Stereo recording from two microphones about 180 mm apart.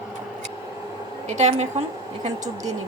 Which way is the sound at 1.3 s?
40° right (ahead or behind).